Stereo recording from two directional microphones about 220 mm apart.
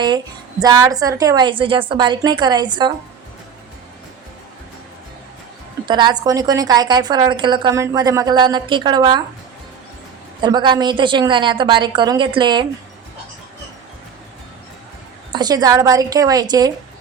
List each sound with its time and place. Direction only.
0.6 s a woman's voice: 15° right (ahead or behind)
5.8 s a woman's voice: 20° right (ahead or behind)
10.4 s a woman's voice: 20° right (ahead or behind)
15.3 s a woman's voice: 20° right (ahead or behind)